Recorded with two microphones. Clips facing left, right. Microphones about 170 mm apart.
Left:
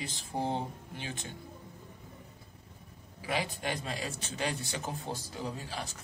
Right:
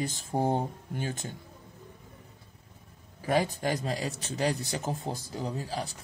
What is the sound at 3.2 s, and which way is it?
Speech, 45° right (ahead or behind).